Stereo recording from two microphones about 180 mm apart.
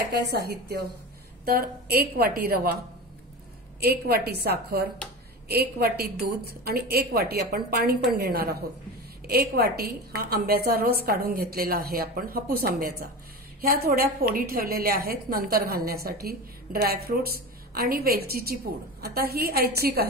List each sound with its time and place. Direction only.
0.2 s a woman's voice: 65° right (ahead or behind)
3.8 s a woman's voice: 60° right (ahead or behind)